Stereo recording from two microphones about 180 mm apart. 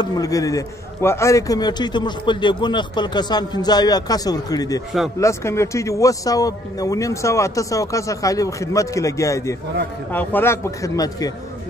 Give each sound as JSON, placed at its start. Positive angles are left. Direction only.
{"t": 0.0, "sound": "a man's voice", "side_deg": 20}